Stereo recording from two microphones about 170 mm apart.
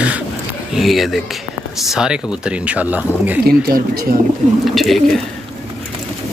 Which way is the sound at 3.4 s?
65° right (ahead or behind).